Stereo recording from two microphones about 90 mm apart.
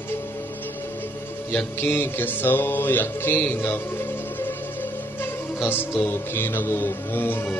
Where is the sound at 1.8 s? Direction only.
25° left (ahead or behind).